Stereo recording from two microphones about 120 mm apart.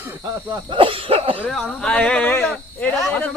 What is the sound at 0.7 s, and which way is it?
Speech, 45° right (ahead or behind).